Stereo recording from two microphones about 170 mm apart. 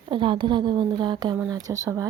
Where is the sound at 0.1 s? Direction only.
30° right (ahead or behind).